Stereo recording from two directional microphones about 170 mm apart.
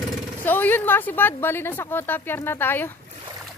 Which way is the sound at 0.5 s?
10° left (ahead or behind).